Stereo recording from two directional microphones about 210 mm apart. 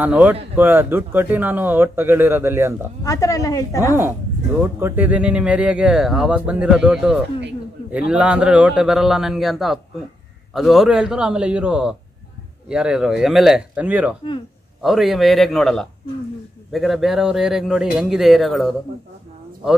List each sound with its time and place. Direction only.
0.0 s speech: 5° right (ahead or behind)
3.0 s a woman's voice: 15° left (ahead or behind)
4.7 s speech: 10° right (ahead or behind)